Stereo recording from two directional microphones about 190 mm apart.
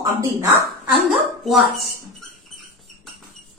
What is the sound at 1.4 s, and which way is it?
Speech, centre (ahead or behind).